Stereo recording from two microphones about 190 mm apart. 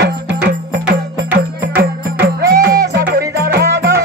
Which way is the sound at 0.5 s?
65° right (ahead or behind).